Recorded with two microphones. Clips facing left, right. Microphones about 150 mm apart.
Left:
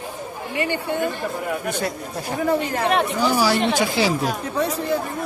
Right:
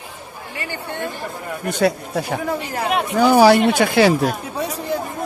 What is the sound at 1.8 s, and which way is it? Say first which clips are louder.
Speech: right 8 dB; 75° right (ahead or behind).